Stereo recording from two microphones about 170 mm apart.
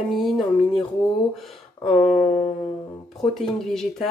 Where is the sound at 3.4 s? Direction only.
Centre (ahead or behind).